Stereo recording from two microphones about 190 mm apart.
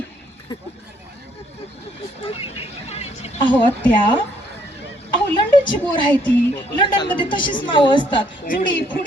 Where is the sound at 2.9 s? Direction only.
35° left (ahead or behind).